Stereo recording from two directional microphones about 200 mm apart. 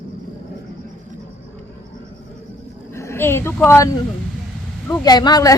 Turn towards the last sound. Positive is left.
turn(degrees=20)  # may be behind; listen again after turning